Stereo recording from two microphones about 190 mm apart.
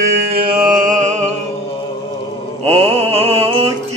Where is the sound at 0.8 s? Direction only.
40° right (ahead or behind).